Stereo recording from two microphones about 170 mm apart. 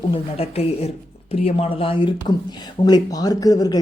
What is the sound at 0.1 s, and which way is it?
Speech, 35° left (ahead or behind).